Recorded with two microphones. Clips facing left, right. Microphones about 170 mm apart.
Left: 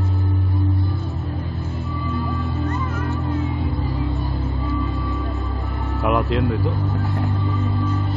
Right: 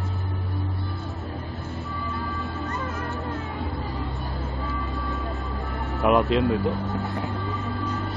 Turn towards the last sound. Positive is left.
turn(degrees=0)  # may be behind; listen again after turning